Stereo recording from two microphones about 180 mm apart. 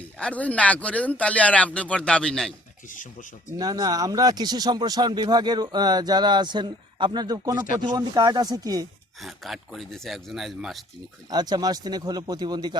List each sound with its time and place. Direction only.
0.2 s speech: 5° left (ahead or behind)
2.9 s speech: 45° left (ahead or behind)
3.6 s speech: 20° right (ahead or behind)
9.2 s speech: centre (ahead or behind)
11.3 s speech: 25° right (ahead or behind)